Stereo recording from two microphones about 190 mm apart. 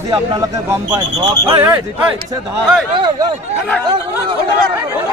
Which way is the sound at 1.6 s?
10° right (ahead or behind).